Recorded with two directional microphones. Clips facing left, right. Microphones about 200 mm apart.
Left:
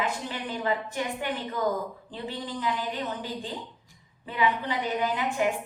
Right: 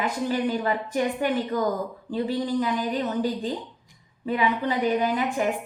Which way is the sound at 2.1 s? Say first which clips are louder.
Right 10 dB; 40° right (ahead or behind).